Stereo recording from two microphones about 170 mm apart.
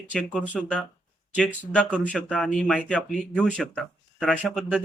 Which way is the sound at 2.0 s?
5° left (ahead or behind).